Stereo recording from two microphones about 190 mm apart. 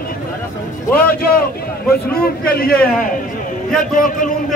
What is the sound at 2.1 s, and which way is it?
A man's voice, 50° left (ahead or behind).